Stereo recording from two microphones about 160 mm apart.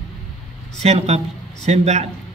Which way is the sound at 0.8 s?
45° right (ahead or behind).